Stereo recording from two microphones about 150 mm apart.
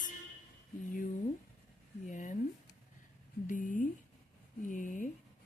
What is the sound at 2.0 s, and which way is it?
Speech, 55° left (ahead or behind).